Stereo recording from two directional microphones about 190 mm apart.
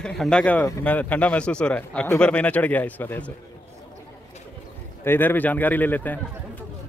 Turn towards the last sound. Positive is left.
turn(degrees=10)  # may be behind; listen again after turning